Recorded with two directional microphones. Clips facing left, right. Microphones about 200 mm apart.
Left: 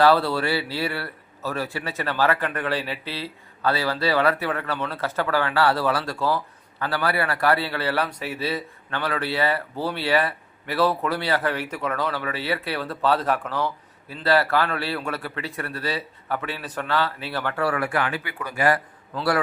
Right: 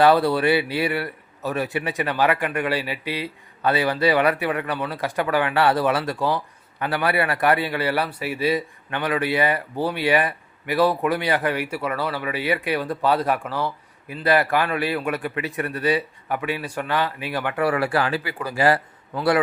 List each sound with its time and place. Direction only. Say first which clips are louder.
0.0 s a man's voice: right 2 dB; 15° right (ahead or behind)